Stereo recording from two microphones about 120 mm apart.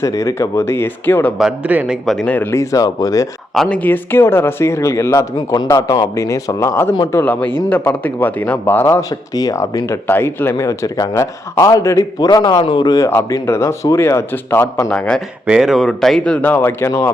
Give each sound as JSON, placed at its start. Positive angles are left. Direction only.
{"t": 0.0, "sound": "speech", "side_deg": 25}
{"t": 1.4, "sound": "a man's voice", "side_deg": -10}
{"t": 2.0, "sound": "speech", "side_deg": 10}
{"t": 3.5, "sound": "speech", "side_deg": 5}
{"t": 13.1, "sound": "speech", "side_deg": 20}
{"t": 14.8, "sound": "speech", "side_deg": 10}
{"t": 15.4, "sound": "speech", "side_deg": -5}